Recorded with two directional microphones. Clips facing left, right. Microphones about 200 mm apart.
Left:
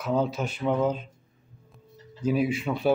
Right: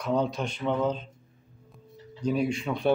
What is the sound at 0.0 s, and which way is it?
Speech, 5° left (ahead or behind).